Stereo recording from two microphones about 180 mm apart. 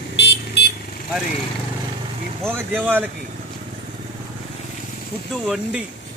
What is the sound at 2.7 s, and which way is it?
Speech, 10° right (ahead or behind).